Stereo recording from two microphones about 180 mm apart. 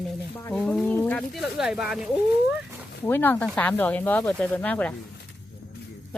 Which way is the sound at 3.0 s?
10° left (ahead or behind).